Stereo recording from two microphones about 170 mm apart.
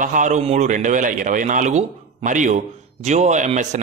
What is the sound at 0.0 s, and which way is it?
A man's voice, 50° right (ahead or behind).